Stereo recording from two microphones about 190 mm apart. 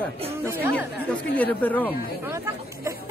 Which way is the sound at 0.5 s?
10° right (ahead or behind).